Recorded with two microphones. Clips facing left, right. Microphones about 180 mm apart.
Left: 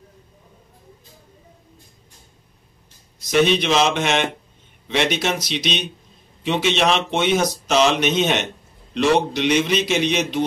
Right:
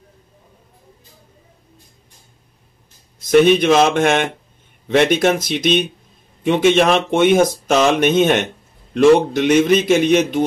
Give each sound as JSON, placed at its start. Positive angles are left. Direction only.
{"t": 3.2, "sound": "speech", "side_deg": -50}